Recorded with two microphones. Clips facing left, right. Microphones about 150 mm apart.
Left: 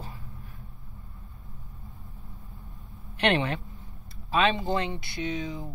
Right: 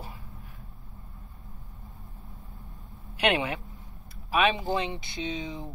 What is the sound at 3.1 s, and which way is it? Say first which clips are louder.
Speech: left 1 dB; 10° right (ahead or behind).